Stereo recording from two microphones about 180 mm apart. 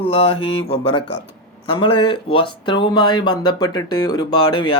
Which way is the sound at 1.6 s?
30° left (ahead or behind).